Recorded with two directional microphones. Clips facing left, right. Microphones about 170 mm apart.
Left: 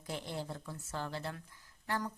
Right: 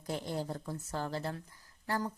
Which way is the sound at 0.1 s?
40° right (ahead or behind).